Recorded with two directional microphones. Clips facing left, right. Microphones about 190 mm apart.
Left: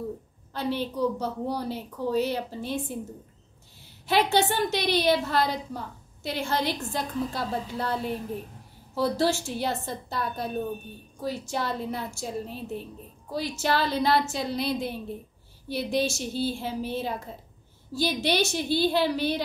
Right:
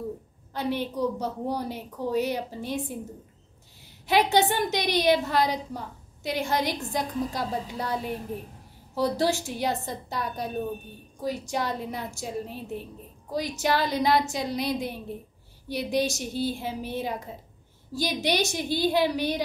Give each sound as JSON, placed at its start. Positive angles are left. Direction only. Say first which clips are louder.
{"t": 0.5, "sound": "a woman's voice", "louder": "even", "side_deg": -15}
{"t": 4.0, "sound": "a woman's voice", "louder": "right 1 dB", "side_deg": -15}